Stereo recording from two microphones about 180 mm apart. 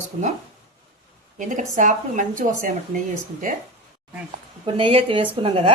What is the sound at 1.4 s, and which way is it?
A woman's voice, 45° right (ahead or behind).